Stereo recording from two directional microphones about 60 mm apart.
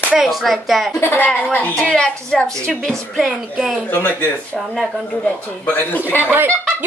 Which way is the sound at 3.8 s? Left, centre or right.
Left.